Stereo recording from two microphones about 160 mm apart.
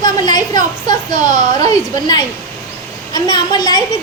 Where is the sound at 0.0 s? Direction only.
25° left (ahead or behind).